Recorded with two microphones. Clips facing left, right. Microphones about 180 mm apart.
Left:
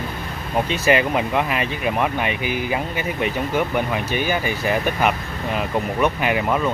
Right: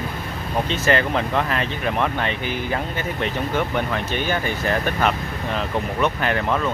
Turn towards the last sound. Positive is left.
turn(degrees=10)  # may be behind; listen again after turning